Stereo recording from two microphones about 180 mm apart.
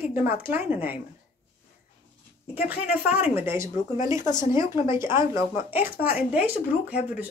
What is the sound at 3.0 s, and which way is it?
Speech, 10° right (ahead or behind).